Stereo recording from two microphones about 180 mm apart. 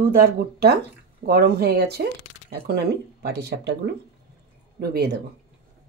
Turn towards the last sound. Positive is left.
turn(degrees=-60)  # may be behind; listen again after turning